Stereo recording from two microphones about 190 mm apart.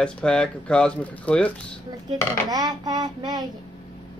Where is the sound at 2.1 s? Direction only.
20° right (ahead or behind).